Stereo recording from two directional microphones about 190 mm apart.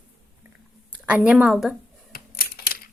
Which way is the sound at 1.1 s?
5° right (ahead or behind).